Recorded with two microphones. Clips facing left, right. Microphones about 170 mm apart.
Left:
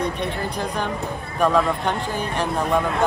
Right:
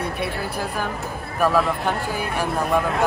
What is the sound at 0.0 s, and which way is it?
Speech, 5° right (ahead or behind).